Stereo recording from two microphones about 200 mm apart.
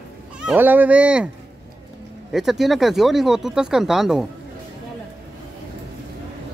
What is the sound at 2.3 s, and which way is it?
Speech, centre (ahead or behind).